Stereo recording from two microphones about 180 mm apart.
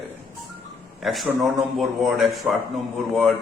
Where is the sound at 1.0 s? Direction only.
Centre (ahead or behind).